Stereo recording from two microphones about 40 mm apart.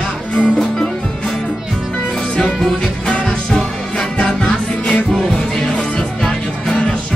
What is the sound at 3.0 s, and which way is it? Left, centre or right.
Music, left.